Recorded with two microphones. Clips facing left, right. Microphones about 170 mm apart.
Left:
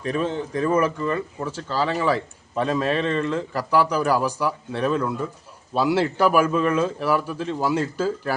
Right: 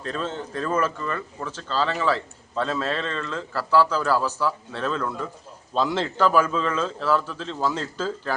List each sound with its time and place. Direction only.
0.0 s speech: 15° left (ahead or behind)